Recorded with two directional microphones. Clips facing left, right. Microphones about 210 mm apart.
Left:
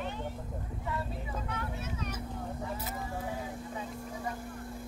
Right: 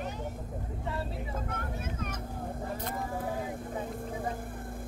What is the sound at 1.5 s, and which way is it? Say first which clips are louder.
Speech: right 1 dB; 50° right (ahead or behind).